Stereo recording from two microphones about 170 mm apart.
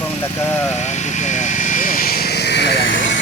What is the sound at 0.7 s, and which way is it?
Vehicle, 45° left (ahead or behind).